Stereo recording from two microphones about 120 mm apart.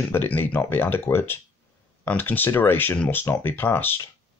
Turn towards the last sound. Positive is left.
turn(degrees=15)  # may be behind; listen again after turning